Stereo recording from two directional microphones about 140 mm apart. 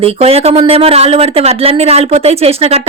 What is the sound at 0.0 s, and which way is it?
A woman's voice, 45° right (ahead or behind).